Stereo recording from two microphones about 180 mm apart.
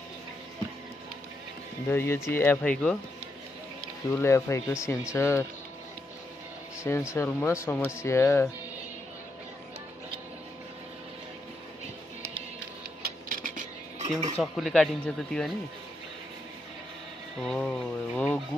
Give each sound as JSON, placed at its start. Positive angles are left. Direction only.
{"t": 1.9, "sound": "speech", "side_deg": 15}
{"t": 4.1, "sound": "speech", "side_deg": 15}
{"t": 6.8, "sound": "speech", "side_deg": 15}
{"t": 13.0, "sound": "mechanisms", "side_deg": -50}
{"t": 14.3, "sound": "speech", "side_deg": 0}
{"t": 17.4, "sound": "speech", "side_deg": 5}